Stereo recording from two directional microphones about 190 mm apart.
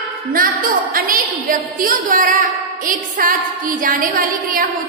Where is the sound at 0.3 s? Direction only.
50° right (ahead or behind).